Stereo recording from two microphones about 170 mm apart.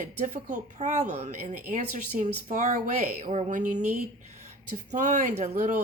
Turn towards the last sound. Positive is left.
turn(degrees=-45)  # may be behind; listen again after turning